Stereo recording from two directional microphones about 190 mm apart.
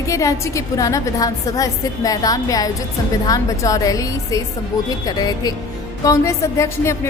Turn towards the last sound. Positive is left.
turn(degrees=15)  # may be behind; listen again after turning